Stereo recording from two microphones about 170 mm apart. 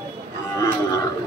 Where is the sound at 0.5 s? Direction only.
20° left (ahead or behind).